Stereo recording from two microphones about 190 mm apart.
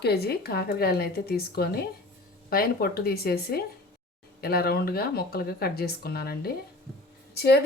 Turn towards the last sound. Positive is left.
turn(degrees=60)  # may be behind; listen again after turning